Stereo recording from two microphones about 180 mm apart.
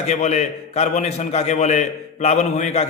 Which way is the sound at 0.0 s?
40° left (ahead or behind).